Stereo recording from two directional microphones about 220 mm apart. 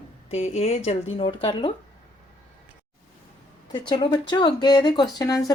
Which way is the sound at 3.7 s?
20° left (ahead or behind).